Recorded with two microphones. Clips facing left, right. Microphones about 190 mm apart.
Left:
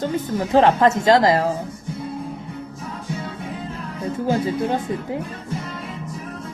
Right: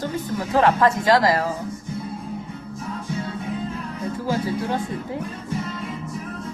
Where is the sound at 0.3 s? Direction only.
25° left (ahead or behind).